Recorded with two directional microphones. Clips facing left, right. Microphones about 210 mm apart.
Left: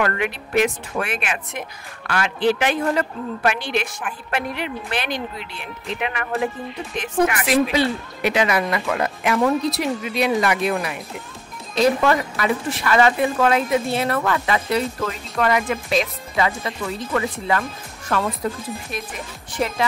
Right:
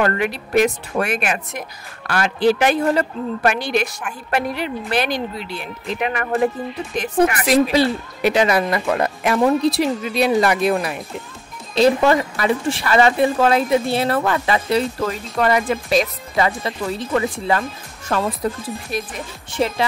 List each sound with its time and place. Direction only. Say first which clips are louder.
0.0 s a woman's voice: right 3 dB; 35° right (ahead or behind)
19.6 s speech: right 3 dB; 25° right (ahead or behind)